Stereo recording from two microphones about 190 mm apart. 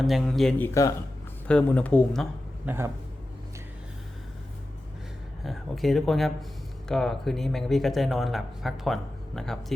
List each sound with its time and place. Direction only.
0.0 s speech: centre (ahead or behind)
0.7 s speech: 15° left (ahead or behind)
1.5 s speech: 5° left (ahead or behind)
2.6 s speech: 15° right (ahead or behind)
5.4 s speech: centre (ahead or behind)